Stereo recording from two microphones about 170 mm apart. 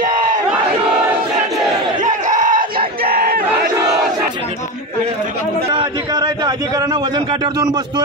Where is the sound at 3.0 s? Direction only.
60° right (ahead or behind).